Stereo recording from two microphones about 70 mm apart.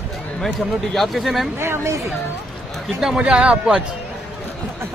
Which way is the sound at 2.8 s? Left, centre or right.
Centre.